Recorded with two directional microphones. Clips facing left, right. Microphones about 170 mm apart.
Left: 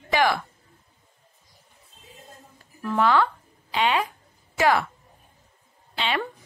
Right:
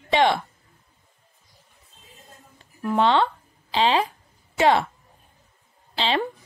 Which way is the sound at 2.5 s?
25° right (ahead or behind).